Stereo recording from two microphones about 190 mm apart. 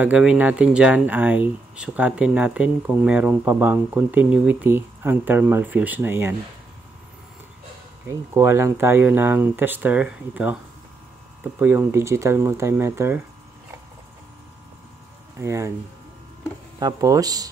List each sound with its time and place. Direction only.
0.0 s speech: 5° right (ahead or behind)
8.1 s speech: 15° right (ahead or behind)
11.6 s speech: 10° right (ahead or behind)
15.3 s speech: 15° right (ahead or behind)
16.8 s speech: 20° right (ahead or behind)